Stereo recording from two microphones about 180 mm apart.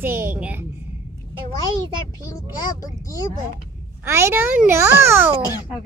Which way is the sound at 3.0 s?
20° left (ahead or behind).